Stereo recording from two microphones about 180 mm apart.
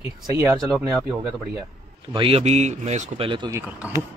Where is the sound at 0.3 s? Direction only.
15° right (ahead or behind).